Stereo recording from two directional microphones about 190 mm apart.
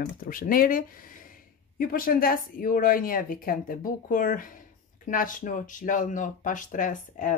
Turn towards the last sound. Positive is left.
turn(degrees=45)  # may be behind; listen again after turning